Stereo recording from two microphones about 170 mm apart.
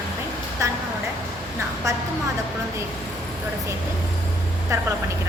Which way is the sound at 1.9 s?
15° right (ahead or behind).